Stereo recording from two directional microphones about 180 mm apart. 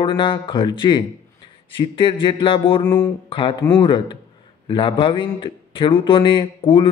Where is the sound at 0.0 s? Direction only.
25° left (ahead or behind).